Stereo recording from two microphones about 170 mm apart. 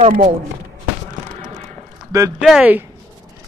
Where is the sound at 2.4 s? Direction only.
5° right (ahead or behind).